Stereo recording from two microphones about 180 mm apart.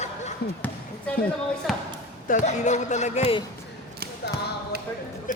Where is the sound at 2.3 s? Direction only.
40° left (ahead or behind).